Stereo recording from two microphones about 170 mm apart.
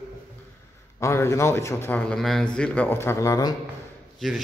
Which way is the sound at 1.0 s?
15° left (ahead or behind).